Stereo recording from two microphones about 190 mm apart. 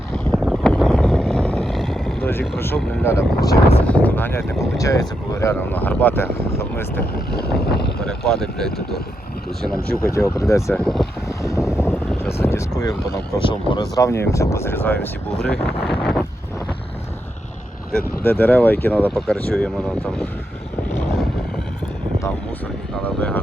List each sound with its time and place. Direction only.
0.3 s boat: centre (ahead or behind)
3.0 s speech: 15° left (ahead or behind)
7.7 s vehicle: 55° left (ahead or behind)
8.0 s speech: 5° left (ahead or behind)
9.8 s speech: 50° left (ahead or behind)
10.1 s speech: 15° left (ahead or behind)
13.4 s speech: 25° left (ahead or behind)
13.9 s speech: 15° left (ahead or behind)
17.9 s speech: 50° left (ahead or behind)
18.3 s speech: 10° left (ahead or behind)
23.0 s speech: 10° left (ahead or behind)